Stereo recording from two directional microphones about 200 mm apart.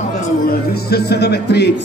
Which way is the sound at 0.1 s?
50° left (ahead or behind).